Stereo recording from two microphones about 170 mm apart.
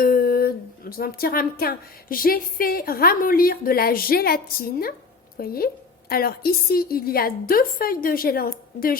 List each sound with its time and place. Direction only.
0.0 s speech: 60° left (ahead or behind)